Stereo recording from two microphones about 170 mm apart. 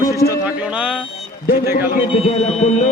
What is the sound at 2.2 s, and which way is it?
Speech, 40° left (ahead or behind).